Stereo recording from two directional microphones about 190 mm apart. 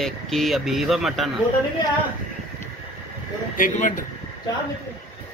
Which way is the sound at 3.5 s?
45° left (ahead or behind).